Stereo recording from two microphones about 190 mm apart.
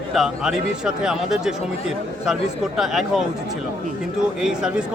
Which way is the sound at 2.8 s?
Centre (ahead or behind).